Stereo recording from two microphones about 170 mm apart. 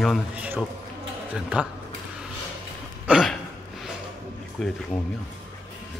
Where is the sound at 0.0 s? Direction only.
5° right (ahead or behind).